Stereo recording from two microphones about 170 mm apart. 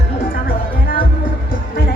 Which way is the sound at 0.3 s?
60° left (ahead or behind).